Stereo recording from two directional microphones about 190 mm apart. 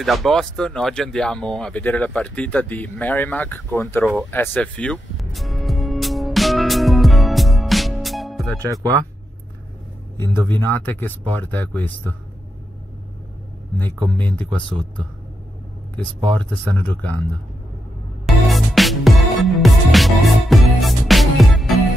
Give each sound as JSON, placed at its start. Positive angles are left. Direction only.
{"t": 0.0, "sound": "speech", "side_deg": 0}
{"t": 4.3, "sound": "music", "side_deg": 10}
{"t": 10.1, "sound": "speech", "side_deg": 10}
{"t": 14.1, "sound": "speech", "side_deg": 10}
{"t": 16.2, "sound": "speech", "side_deg": -25}
{"t": 16.4, "sound": "speech", "side_deg": 10}
{"t": 18.2, "sound": "music", "side_deg": 0}